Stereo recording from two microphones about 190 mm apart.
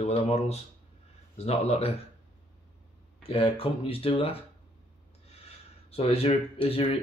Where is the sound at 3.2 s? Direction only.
30° left (ahead or behind).